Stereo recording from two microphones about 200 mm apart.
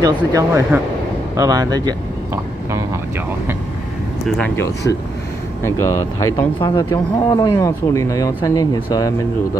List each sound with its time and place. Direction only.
0.0 s speech: 15° right (ahead or behind)
4.4 s speech: 10° left (ahead or behind)